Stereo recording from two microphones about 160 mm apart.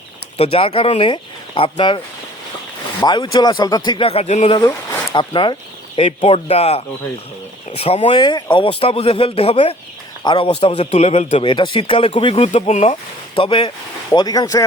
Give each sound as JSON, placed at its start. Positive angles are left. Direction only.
{"t": 0.3, "sound": "speech", "side_deg": 40}
{"t": 3.0, "sound": "speech", "side_deg": 25}
{"t": 5.1, "sound": "speech", "side_deg": 30}
{"t": 8.2, "sound": "speech", "side_deg": 25}
{"t": 11.5, "sound": "speech", "side_deg": 30}
{"t": 12.5, "sound": "speech", "side_deg": 45}
{"t": 13.3, "sound": "speech", "side_deg": 30}